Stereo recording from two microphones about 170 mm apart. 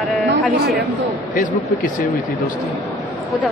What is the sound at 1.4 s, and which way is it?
Speech, 50° left (ahead or behind).